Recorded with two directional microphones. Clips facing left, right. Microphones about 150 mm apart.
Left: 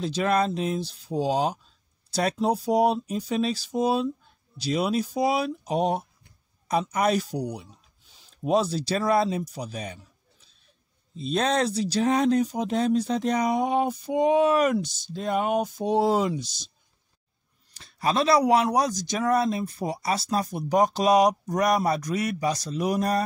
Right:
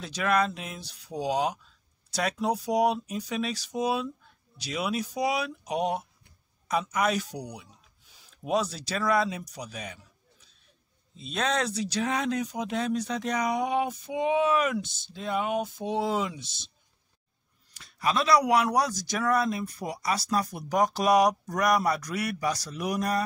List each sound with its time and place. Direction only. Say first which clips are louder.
0.0 s speech: left 3 dB; 30° left (ahead or behind)
11.1 s speech: left 5 dB; 35° left (ahead or behind)
17.7 s a man's voice: left 3 dB; 30° left (ahead or behind)